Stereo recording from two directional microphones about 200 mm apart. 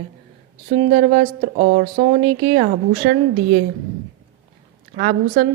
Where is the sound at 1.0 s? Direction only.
40° right (ahead or behind).